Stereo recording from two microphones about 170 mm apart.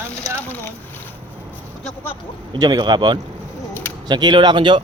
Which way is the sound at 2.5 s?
25° right (ahead or behind).